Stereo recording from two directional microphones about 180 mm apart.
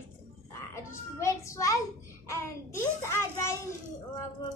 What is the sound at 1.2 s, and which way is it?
Speech, 15° left (ahead or behind).